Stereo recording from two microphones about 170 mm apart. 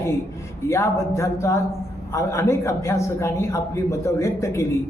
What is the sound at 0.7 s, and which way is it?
A man's voice, 15° left (ahead or behind).